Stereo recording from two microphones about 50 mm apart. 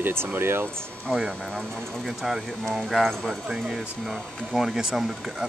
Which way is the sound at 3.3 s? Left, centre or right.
Centre.